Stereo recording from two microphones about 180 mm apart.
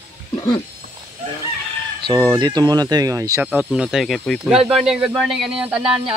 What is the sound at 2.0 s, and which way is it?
Speech, 20° right (ahead or behind).